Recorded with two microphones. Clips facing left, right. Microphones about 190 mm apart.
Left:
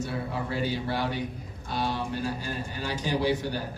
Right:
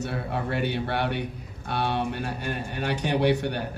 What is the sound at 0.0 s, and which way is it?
A man's voice, 65° right (ahead or behind).